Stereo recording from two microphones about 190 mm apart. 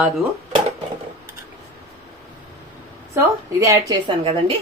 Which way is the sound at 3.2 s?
15° right (ahead or behind).